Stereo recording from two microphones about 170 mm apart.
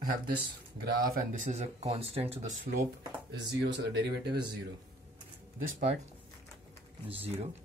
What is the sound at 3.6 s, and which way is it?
Speech, 90° right.